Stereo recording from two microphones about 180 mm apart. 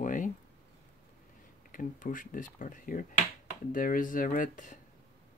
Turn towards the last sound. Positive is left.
turn(degrees=45)  # may be behind; listen again after turning